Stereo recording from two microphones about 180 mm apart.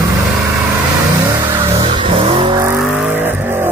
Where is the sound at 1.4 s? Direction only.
15° right (ahead or behind).